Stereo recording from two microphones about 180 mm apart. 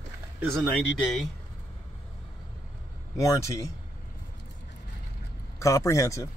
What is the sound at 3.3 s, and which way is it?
Speech, 15° left (ahead or behind).